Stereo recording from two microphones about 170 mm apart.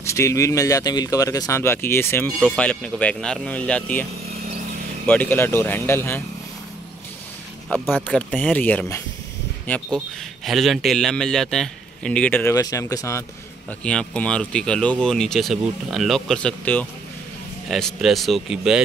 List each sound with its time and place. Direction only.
0.0 s speech: 15° left (ahead or behind)
7.7 s speech: 10° left (ahead or behind)
9.7 s speech: centre (ahead or behind)
13.7 s speech: 5° left (ahead or behind)